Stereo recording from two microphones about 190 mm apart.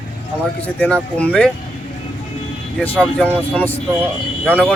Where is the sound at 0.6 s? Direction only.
5° left (ahead or behind).